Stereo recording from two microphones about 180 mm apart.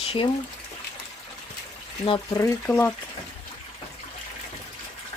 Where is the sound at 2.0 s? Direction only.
30° left (ahead or behind).